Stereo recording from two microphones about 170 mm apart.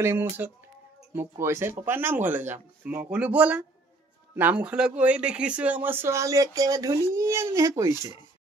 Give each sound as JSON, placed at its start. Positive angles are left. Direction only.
{"t": 0.0, "sound": "speech", "side_deg": -15}
{"t": 7.9, "sound": "speech", "side_deg": 25}